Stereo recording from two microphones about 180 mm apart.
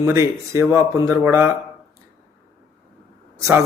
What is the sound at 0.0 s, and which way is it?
A man's voice, 15° right (ahead or behind).